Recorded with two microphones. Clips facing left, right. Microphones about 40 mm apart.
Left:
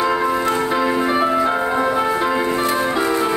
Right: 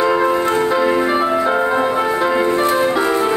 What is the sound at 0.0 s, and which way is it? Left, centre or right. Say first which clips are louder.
Music: right 3 dB; centre.